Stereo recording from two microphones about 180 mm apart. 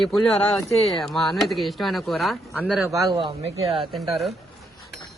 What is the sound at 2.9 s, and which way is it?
Speech, 25° right (ahead or behind).